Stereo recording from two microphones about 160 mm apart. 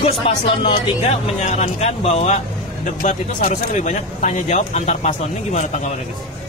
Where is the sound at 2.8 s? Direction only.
50° left (ahead or behind).